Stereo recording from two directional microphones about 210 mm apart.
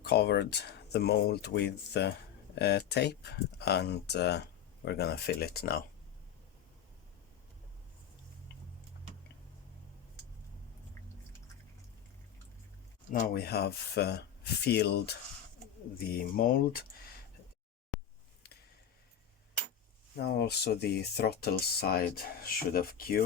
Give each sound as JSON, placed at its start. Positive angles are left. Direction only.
{"t": 0.0, "sound": "speech", "side_deg": 50}
{"t": 13.2, "sound": "speech", "side_deg": 50}
{"t": 20.1, "sound": "speech", "side_deg": 50}